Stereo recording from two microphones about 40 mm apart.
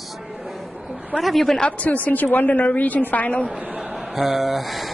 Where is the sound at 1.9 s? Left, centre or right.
Left.